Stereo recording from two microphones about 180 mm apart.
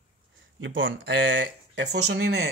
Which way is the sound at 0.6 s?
90° right.